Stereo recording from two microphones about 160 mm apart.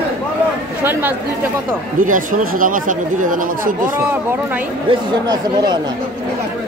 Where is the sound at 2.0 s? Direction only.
55° right (ahead or behind).